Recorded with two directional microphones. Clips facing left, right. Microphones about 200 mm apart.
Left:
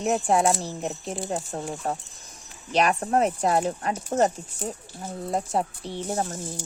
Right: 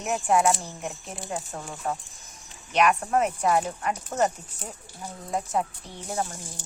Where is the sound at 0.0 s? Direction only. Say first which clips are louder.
Left 1 dB; 35° left (ahead or behind).